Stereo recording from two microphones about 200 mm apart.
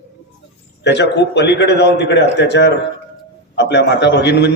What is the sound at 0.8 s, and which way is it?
A man's voice, 60° left (ahead or behind).